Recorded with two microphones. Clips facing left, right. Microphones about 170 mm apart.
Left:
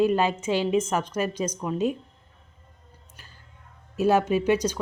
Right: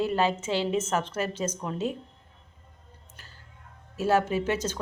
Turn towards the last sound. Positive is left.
turn(degrees=15)  # may be behind; listen again after turning